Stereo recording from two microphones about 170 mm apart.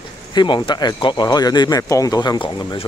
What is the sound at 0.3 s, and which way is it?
Speech, 25° left (ahead or behind).